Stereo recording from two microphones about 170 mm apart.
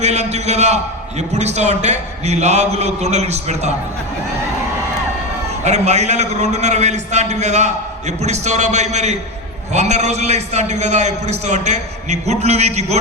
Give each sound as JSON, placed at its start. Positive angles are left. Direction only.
{"t": 0.0, "sound": "a man's voice", "side_deg": -40}
{"t": 5.6, "sound": "a man's voice", "side_deg": -40}